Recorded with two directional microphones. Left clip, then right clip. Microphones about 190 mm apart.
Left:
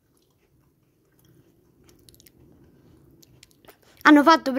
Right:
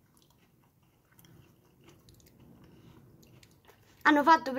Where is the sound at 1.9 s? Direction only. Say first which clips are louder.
Left 7 dB; 45° left (ahead or behind).